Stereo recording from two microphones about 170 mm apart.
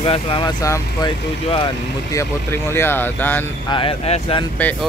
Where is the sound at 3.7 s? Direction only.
30° left (ahead or behind).